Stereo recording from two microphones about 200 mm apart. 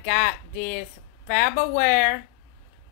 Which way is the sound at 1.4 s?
45° left (ahead or behind).